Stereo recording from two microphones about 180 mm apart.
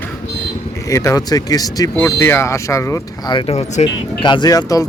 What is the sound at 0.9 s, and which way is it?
Speech, 20° left (ahead or behind).